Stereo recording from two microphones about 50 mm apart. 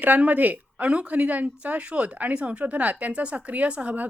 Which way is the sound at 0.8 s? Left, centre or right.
Right.